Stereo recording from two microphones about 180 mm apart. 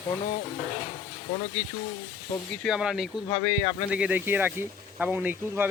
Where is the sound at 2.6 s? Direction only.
Centre (ahead or behind).